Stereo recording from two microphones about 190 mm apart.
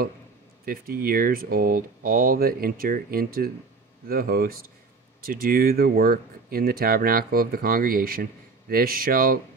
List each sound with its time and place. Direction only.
0.7 s speech: 50° right (ahead or behind)